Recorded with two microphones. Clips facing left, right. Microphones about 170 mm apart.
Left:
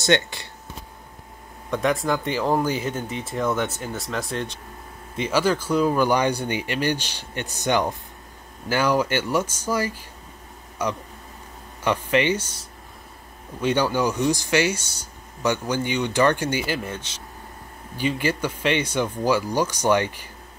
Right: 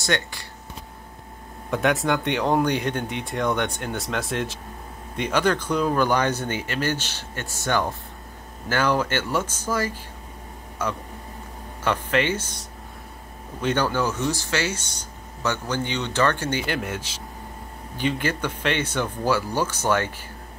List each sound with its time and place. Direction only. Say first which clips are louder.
0.0 s speech: left 5 dB; 20° left (ahead or behind)
1.7 s speech: even; centre (ahead or behind)
13.6 s speech: left 2 dB; 10° left (ahead or behind)